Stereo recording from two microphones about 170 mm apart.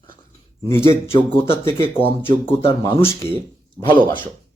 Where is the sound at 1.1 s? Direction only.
30° left (ahead or behind).